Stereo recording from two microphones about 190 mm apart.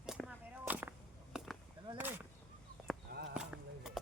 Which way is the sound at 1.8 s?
15° right (ahead or behind).